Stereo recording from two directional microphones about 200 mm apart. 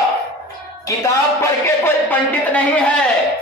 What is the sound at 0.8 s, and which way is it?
Speech, 15° left (ahead or behind).